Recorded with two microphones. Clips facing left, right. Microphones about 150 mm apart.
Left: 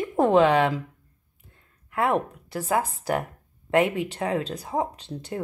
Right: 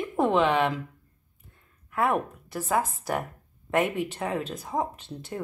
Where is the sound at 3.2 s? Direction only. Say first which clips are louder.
Left 1 dB; 30° left (ahead or behind).